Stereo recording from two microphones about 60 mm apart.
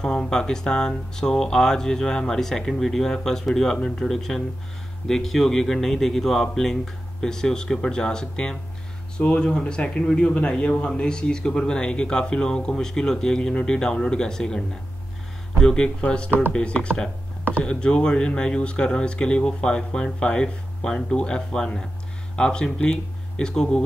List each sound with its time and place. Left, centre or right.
0.0 s a man's voice: centre
15.6 s a man's voice: centre